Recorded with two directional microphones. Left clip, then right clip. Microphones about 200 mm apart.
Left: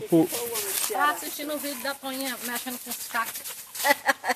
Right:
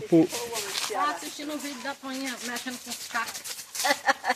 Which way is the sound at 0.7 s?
50° left (ahead or behind).